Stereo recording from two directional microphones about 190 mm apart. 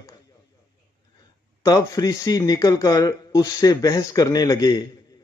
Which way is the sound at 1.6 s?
20° left (ahead or behind).